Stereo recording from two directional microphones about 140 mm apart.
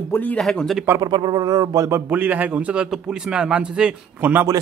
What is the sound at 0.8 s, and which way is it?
Speech, 25° right (ahead or behind).